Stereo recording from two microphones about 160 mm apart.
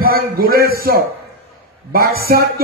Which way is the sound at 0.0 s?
65° right (ahead or behind).